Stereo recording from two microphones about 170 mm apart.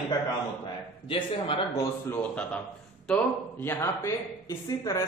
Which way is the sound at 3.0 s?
10° left (ahead or behind).